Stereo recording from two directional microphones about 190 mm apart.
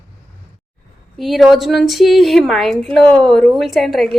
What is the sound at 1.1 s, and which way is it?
Speech, centre (ahead or behind).